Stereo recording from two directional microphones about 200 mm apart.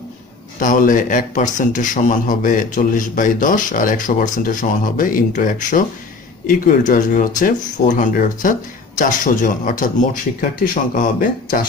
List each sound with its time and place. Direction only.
0.6 s speech: 40° left (ahead or behind)